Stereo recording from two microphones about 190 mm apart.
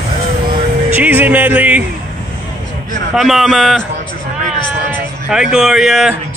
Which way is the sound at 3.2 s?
Centre (ahead or behind).